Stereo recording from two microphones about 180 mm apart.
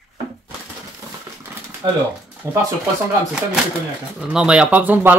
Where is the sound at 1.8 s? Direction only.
30° right (ahead or behind).